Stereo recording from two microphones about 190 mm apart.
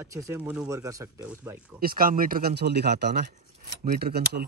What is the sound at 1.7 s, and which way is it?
Speech, 50° right (ahead or behind).